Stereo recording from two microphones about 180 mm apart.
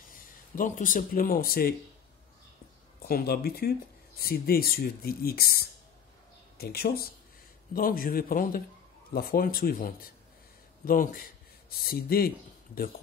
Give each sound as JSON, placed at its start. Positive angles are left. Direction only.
{"t": 0.1, "sound": "speech", "side_deg": 50}
{"t": 3.1, "sound": "a man's voice", "side_deg": 60}